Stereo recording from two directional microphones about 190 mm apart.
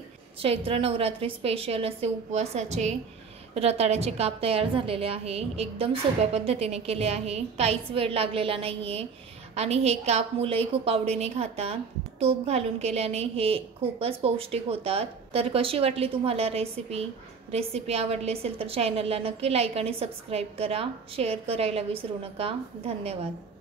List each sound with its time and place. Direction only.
0.4 s a woman's voice: 30° right (ahead or behind)